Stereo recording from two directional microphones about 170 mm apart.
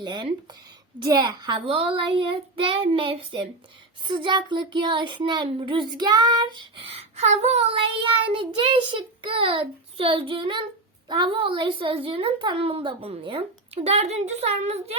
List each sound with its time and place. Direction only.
0.0 s a woman's voice: 25° right (ahead or behind); by 14.8 s 40° right (ahead or behind)